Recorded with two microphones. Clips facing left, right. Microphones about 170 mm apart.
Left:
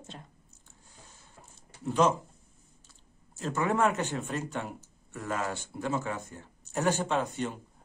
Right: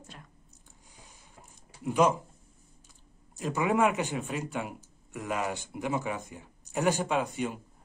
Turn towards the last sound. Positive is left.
turn(degrees=-10)  # may be behind; listen again after turning